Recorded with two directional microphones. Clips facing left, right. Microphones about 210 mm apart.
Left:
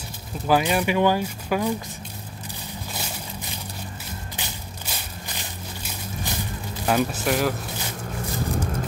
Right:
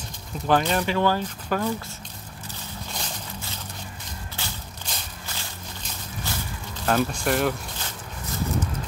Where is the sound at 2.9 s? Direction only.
10° left (ahead or behind).